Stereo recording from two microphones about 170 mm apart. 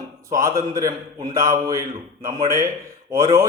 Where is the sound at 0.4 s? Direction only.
15° right (ahead or behind).